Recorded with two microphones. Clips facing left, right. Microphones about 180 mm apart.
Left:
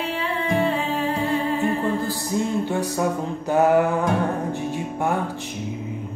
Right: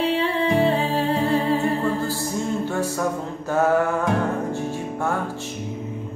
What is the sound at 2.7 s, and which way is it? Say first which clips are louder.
Music: left 1 dB; 15° left (ahead or behind).